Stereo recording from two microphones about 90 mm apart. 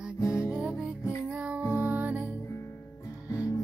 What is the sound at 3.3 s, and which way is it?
Music, 35° left (ahead or behind).